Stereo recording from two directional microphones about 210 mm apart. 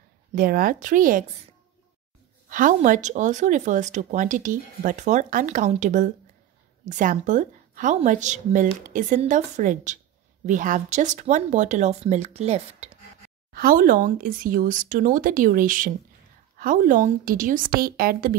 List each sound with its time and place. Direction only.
0.3 s speech: 40° right (ahead or behind)
2.5 s speech: 40° right (ahead or behind)
13.5 s speech: 45° right (ahead or behind)